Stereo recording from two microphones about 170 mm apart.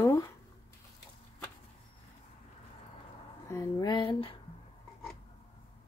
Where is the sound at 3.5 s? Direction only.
20° left (ahead or behind).